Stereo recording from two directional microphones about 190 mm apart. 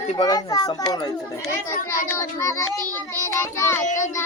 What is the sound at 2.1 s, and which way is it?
Child singing, 15° left (ahead or behind).